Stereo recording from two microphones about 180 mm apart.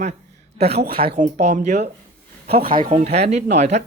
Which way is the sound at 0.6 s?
35° right (ahead or behind).